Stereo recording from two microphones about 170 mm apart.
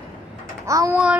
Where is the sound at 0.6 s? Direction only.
20° right (ahead or behind).